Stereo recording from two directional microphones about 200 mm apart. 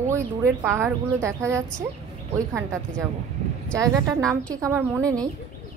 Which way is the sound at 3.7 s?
15° right (ahead or behind).